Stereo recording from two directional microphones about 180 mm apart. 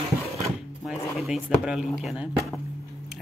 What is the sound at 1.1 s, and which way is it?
Speech, centre (ahead or behind).